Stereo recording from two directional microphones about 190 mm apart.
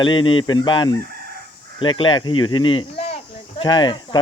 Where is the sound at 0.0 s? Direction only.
25° left (ahead or behind).